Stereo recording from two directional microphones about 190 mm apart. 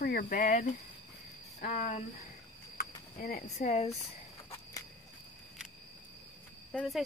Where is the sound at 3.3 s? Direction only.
40° left (ahead or behind).